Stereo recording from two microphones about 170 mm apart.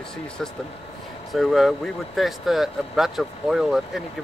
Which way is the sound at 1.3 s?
Centre (ahead or behind).